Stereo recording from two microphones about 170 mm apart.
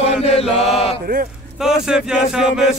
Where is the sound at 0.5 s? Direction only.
Centre (ahead or behind).